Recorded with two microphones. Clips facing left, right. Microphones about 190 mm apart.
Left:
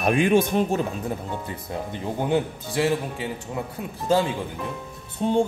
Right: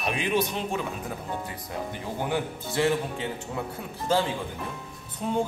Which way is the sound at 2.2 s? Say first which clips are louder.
Left 6 dB; 20° left (ahead or behind).